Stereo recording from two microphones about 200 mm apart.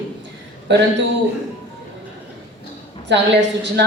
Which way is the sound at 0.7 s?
60° right (ahead or behind).